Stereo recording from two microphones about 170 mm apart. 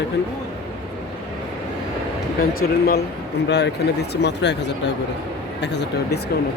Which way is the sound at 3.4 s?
90° left.